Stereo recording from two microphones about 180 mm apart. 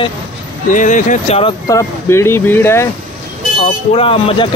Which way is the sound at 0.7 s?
45° left (ahead or behind).